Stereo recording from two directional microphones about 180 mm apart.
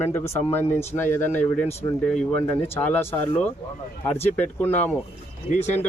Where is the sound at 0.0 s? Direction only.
10° left (ahead or behind).